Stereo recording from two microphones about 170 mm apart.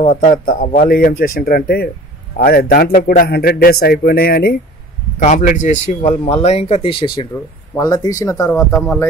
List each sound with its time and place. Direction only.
0.0 s a man's voice: 45° left (ahead or behind); by 4.6 s 65° left (ahead or behind)
5.2 s speech: 50° left (ahead or behind); by 8.5 s 20° left (ahead or behind)
8.5 s speech: 5° left (ahead or behind)